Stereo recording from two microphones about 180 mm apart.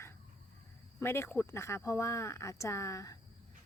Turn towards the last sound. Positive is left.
turn(degrees=15)  # may be behind; listen again after turning